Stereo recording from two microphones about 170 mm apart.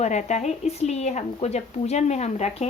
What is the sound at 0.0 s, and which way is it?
A woman's voice, 45° left (ahead or behind).